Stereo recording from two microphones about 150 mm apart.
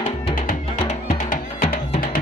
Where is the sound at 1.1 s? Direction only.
65° left (ahead or behind).